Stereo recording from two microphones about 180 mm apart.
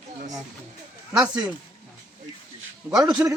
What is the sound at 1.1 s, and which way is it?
Speech, 5° right (ahead or behind).